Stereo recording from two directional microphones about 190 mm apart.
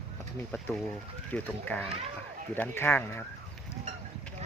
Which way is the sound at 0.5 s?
10° left (ahead or behind).